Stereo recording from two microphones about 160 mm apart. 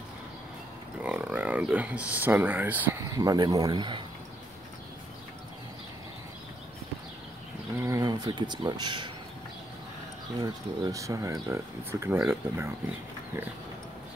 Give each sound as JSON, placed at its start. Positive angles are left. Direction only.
{"t": 1.0, "sound": "speech", "side_deg": -10}
{"t": 3.2, "sound": "speech", "side_deg": -25}
{"t": 7.8, "sound": "speech", "side_deg": -20}
{"t": 10.4, "sound": "speech", "side_deg": -20}